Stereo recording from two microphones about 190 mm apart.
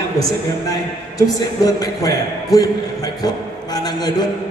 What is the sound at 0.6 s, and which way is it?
A man's voice, 20° left (ahead or behind).